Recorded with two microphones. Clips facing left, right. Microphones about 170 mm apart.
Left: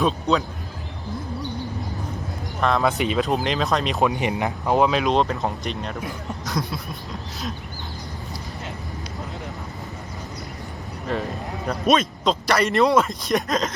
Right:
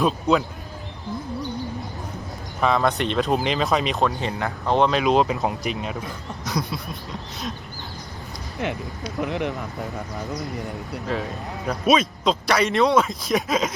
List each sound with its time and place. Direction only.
0.0 s a man's voice: 5° right (ahead or behind)
2.6 s a man's voice: centre (ahead or behind)
4.0 s a man's voice: 15° left (ahead or behind); by 7.5 s centre (ahead or behind)
9.2 s speech: 70° right (ahead or behind)
11.0 s a man's voice: centre (ahead or behind)